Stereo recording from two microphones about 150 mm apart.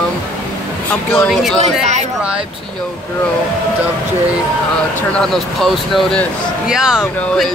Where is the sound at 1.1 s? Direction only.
Centre (ahead or behind).